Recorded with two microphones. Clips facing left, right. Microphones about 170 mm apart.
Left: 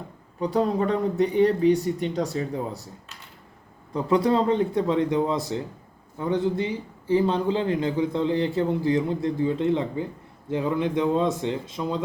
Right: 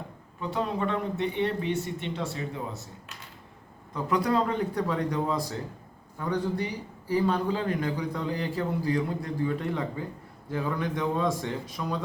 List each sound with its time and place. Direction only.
0.3 s speech: 40° left (ahead or behind)
3.9 s a man's voice: 30° left (ahead or behind)